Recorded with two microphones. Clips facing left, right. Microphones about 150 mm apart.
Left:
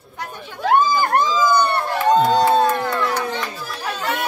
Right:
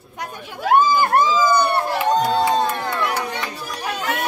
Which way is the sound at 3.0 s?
15° right (ahead or behind).